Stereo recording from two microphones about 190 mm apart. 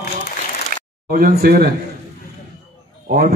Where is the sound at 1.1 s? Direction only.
50° right (ahead or behind).